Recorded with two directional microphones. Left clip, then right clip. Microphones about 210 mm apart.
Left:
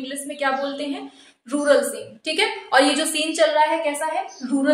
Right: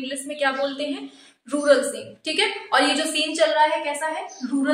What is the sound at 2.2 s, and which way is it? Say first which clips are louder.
Speech: left 1 dB; 10° left (ahead or behind).